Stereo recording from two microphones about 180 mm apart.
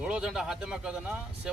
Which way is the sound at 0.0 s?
5° right (ahead or behind).